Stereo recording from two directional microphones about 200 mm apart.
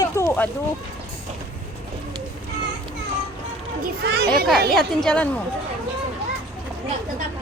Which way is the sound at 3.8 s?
55° right (ahead or behind).